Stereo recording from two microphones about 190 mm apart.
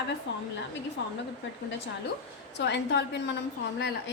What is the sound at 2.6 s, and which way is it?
Speech, 65° left (ahead or behind).